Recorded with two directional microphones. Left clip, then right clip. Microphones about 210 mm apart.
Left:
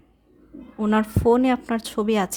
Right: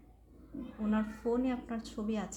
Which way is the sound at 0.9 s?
55° left (ahead or behind).